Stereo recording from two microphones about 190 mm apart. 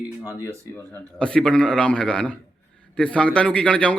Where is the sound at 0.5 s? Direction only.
15° right (ahead or behind).